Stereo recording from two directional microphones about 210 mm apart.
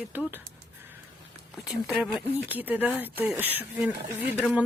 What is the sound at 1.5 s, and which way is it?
Speech, 5° right (ahead or behind).